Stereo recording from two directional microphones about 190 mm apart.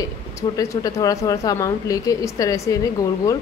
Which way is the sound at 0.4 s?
15° left (ahead or behind).